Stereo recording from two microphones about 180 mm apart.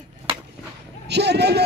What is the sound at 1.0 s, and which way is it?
Speech, 70° right (ahead or behind).